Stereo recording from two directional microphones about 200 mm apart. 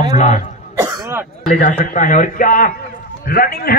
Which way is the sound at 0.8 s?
10° right (ahead or behind).